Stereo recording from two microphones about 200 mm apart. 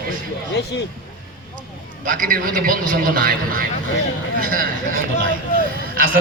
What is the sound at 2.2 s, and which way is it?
A man's voice, 45° right (ahead or behind).